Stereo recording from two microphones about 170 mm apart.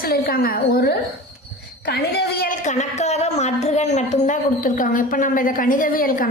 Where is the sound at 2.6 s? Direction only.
45° left (ahead or behind).